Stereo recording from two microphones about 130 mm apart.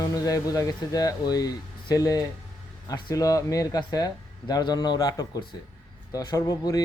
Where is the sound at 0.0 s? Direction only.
30° left (ahead or behind).